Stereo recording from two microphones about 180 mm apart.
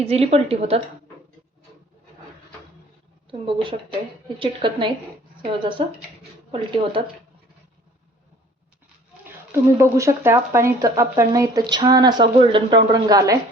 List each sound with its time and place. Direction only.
0.0 s a woman's voice: 35° right (ahead or behind)
3.2 s speech: 30° right (ahead or behind)
9.7 s speech: 15° right (ahead or behind)